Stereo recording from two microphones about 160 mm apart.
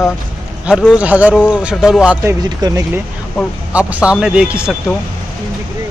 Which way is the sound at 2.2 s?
20° right (ahead or behind).